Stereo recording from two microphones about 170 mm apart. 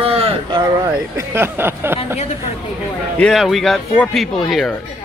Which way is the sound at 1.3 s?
15° right (ahead or behind).